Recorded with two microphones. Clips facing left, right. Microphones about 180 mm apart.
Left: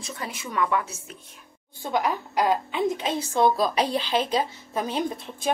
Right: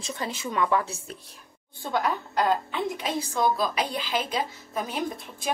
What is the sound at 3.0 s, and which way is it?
A woman's voice, 25° left (ahead or behind).